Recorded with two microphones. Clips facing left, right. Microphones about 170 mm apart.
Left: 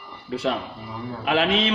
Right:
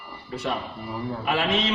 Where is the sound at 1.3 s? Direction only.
75° left (ahead or behind).